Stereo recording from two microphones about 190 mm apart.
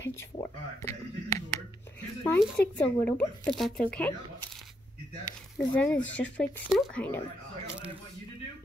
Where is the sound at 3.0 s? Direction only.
5° left (ahead or behind).